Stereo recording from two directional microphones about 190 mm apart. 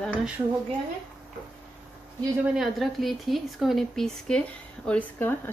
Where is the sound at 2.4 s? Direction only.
Centre (ahead or behind).